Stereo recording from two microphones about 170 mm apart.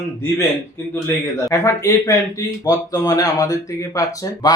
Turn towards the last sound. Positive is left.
turn(degrees=25)  # may be behind; listen again after turning